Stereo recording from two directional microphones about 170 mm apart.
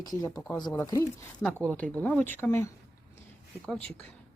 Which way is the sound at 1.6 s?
5° left (ahead or behind).